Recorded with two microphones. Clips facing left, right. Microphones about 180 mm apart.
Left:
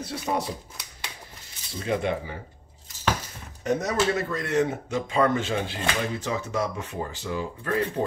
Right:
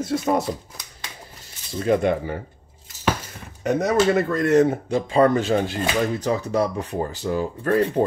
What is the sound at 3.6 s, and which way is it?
Speech, 60° right (ahead or behind).